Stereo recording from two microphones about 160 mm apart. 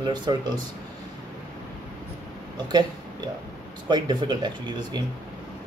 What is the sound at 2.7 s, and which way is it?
Speech, 25° right (ahead or behind).